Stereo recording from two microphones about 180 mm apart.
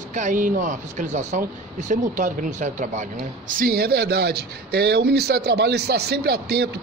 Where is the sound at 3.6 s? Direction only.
60° right (ahead or behind).